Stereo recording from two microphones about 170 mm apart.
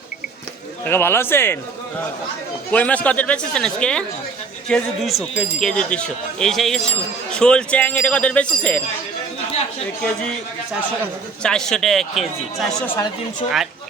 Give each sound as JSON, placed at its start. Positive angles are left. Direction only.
{"t": 0.9, "sound": "a man's voice", "side_deg": 15}
{"t": 2.7, "sound": "a man's voice", "side_deg": 10}
{"t": 11.4, "sound": "speech", "side_deg": 5}
{"t": 13.4, "sound": "speech", "side_deg": 35}